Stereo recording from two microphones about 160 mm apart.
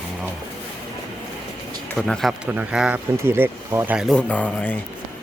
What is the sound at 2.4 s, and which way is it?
Speech, 10° right (ahead or behind).